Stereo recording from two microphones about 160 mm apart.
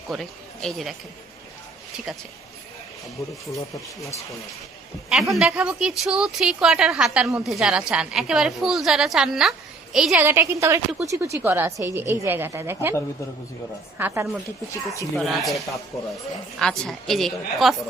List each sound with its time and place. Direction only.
0.1 s a woman's voice: centre (ahead or behind)
3.2 s speech: 20° left (ahead or behind)
5.0 s a woman's voice: centre (ahead or behind)
10.2 s a woman's voice: 15° right (ahead or behind)
14.0 s a woman's voice: 15° right (ahead or behind)
15.1 s a woman's voice: centre (ahead or behind)